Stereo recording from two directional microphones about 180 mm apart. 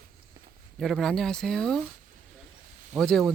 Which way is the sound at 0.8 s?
Centre (ahead or behind).